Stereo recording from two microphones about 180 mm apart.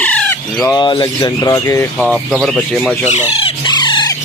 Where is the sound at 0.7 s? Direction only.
25° left (ahead or behind).